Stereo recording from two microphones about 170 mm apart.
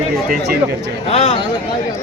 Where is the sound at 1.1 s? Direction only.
40° left (ahead or behind).